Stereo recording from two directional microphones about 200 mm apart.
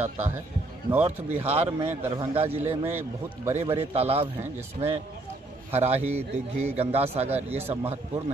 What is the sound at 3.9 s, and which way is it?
A man's voice, 30° right (ahead or behind).